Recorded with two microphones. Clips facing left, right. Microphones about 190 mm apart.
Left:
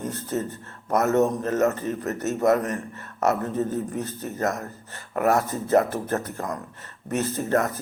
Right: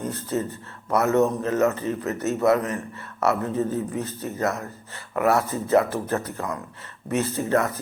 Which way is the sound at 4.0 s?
45° left (ahead or behind).